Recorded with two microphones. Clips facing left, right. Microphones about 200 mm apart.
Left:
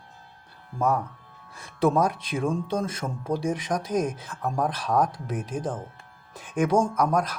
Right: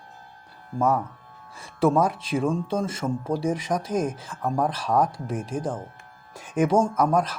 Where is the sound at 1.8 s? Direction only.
5° right (ahead or behind).